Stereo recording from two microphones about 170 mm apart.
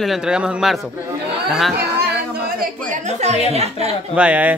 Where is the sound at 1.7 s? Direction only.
70° right (ahead or behind); by 3.9 s 40° right (ahead or behind).